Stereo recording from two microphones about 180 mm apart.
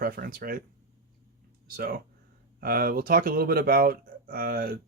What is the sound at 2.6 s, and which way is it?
Speech, 55° right (ahead or behind).